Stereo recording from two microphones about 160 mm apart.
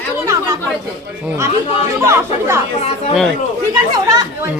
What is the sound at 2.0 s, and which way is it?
Speech, 15° right (ahead or behind).